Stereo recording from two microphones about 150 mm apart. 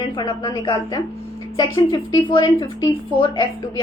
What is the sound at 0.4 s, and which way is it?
A woman's voice, 30° left (ahead or behind).